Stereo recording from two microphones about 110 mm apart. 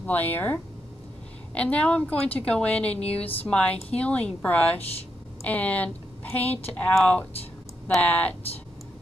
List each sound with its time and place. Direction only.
0.0 s a woman's voice: 15° left (ahead or behind)